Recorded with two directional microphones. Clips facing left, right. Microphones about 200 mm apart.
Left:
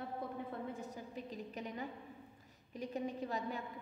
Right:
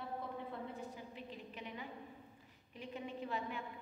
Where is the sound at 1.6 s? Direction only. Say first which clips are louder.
Left 4 dB; 40° left (ahead or behind).